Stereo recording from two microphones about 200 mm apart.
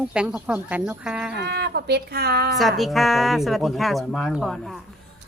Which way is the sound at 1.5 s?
55° right (ahead or behind).